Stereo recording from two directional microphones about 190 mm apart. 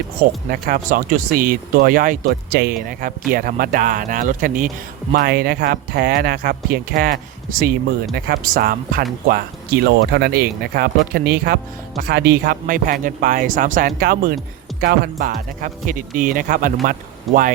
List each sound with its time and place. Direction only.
0.5 s speech: 50° right (ahead or behind)
17.3 s speech: centre (ahead or behind)